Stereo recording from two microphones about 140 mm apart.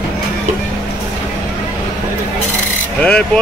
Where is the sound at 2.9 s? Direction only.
5° left (ahead or behind).